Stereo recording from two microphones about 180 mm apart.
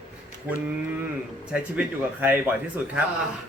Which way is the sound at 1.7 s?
10° right (ahead or behind).